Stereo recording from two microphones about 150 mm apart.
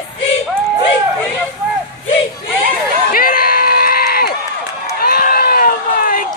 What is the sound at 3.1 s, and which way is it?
Run, 75° left (ahead or behind).